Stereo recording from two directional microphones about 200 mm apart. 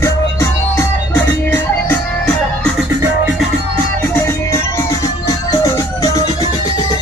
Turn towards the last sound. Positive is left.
turn(degrees=15)  # may be behind; listen again after turning